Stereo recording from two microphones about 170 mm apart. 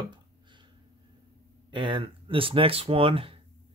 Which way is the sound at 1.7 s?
30° right (ahead or behind).